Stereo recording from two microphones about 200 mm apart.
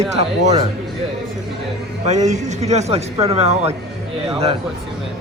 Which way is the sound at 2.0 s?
35° right (ahead or behind).